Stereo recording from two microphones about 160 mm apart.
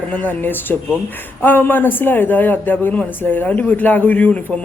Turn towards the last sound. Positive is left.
turn(degrees=10)  # may be behind; listen again after turning